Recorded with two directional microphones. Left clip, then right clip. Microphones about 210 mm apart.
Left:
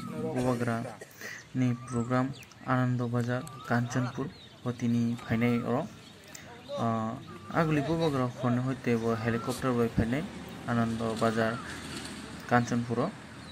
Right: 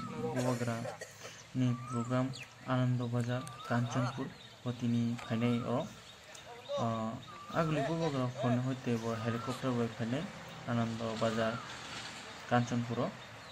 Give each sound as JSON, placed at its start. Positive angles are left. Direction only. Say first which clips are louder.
{"t": 0.5, "sound": "speech", "louder": "left 5 dB", "side_deg": 20}